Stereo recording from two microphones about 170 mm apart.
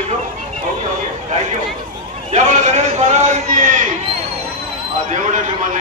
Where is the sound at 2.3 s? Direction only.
45° right (ahead or behind).